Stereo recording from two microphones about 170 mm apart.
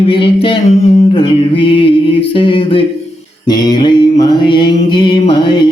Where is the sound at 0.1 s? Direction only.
30° left (ahead or behind).